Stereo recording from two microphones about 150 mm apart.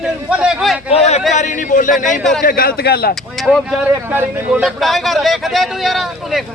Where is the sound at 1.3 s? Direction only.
55° left (ahead or behind).